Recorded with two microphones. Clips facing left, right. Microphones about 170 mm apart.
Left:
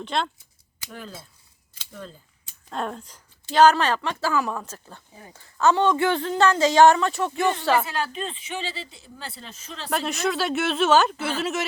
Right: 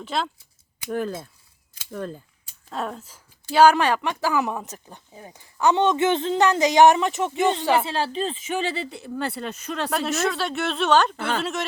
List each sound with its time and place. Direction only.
0.0 s speech: 5° right (ahead or behind)
0.9 s speech: 55° right (ahead or behind)
2.6 s speech: centre (ahead or behind)
7.9 s speech: 30° right (ahead or behind); by 9.9 s 65° right (ahead or behind)
9.9 s speech: centre (ahead or behind)